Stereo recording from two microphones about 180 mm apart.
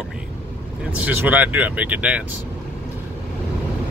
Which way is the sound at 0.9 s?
10° right (ahead or behind).